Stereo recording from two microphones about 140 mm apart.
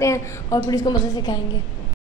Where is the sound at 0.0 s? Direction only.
20° left (ahead or behind).